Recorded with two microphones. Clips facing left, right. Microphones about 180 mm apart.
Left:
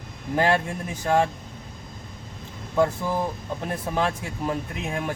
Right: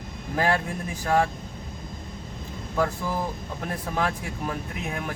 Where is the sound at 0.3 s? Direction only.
25° left (ahead or behind).